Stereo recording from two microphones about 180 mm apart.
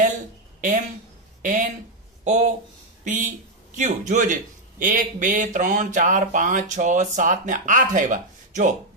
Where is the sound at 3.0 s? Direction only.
45° right (ahead or behind).